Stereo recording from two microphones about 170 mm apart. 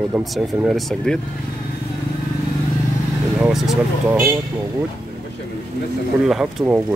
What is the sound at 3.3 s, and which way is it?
Vehicle, 5° right (ahead or behind).